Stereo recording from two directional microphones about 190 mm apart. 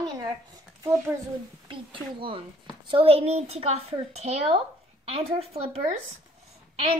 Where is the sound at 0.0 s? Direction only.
20° right (ahead or behind).